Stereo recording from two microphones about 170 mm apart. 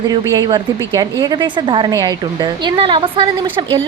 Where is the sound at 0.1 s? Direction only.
20° right (ahead or behind).